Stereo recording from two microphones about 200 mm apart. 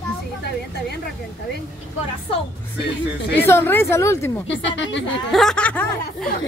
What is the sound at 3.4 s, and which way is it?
Speech, 10° left (ahead or behind).